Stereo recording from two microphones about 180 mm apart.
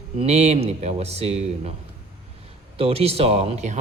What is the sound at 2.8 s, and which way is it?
A man's voice, 35° right (ahead or behind).